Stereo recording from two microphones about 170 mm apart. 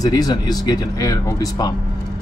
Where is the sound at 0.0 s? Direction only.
20° left (ahead or behind).